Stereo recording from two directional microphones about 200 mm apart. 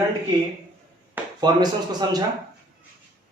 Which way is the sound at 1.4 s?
20° right (ahead or behind).